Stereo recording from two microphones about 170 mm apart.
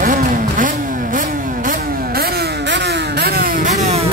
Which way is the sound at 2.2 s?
80° right.